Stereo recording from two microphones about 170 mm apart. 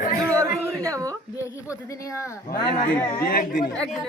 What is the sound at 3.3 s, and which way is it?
Speech, 55° left (ahead or behind).